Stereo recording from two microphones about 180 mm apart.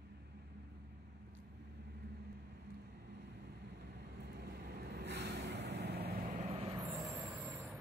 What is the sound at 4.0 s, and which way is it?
Vehicle, 65° right (ahead or behind).